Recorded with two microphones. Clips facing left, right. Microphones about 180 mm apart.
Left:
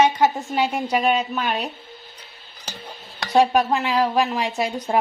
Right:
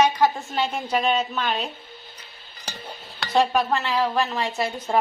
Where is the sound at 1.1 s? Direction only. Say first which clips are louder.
Left 2 dB; 10° left (ahead or behind).